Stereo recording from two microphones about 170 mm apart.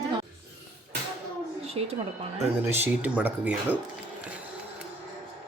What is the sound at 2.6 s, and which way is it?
A man's voice, 10° right (ahead or behind).